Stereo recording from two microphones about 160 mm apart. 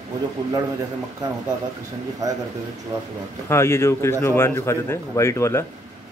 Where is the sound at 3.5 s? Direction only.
15° left (ahead or behind).